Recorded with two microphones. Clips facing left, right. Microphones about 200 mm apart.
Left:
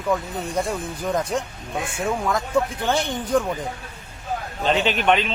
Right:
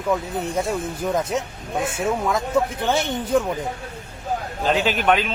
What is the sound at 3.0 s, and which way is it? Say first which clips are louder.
Speech: right 1 dB; 25° right (ahead or behind).